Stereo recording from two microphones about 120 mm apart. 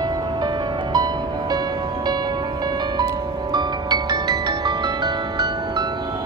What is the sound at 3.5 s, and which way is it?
Music, 35° right (ahead or behind).